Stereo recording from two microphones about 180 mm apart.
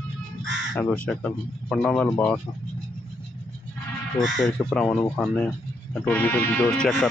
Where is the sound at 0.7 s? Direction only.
10° left (ahead or behind).